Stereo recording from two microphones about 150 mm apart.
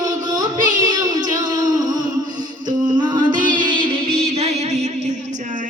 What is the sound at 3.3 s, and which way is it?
Music, 60° right (ahead or behind).